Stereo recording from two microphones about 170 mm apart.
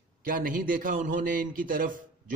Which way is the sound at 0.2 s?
55° right (ahead or behind).